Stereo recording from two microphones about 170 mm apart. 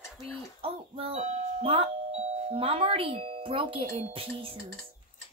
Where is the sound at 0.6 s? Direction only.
35° right (ahead or behind).